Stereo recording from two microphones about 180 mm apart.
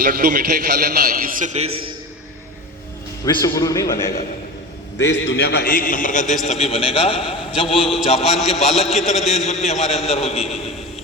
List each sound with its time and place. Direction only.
0.0 s a man's voice: 55° right (ahead or behind); by 1.8 s 35° right (ahead or behind)
3.2 s a man's voice: 20° left (ahead or behind)
4.9 s a man's voice: 80° left; by 8.4 s 35° left (ahead or behind)
8.7 s a man's voice: centre (ahead or behind)
9.6 s a man's voice: 35° left (ahead or behind)